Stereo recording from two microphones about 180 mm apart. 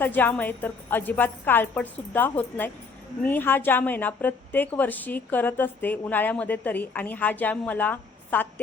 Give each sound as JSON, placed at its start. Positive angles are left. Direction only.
{"t": 0.0, "sound": "a woman's voice", "side_deg": 10}